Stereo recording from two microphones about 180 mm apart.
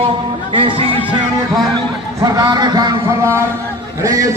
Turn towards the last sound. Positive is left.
turn(degrees=-20)  # may be behind; listen again after turning